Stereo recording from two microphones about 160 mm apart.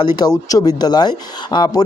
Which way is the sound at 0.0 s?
25° left (ahead or behind).